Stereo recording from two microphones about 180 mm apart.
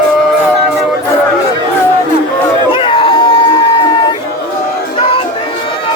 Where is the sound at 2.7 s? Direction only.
30° left (ahead or behind).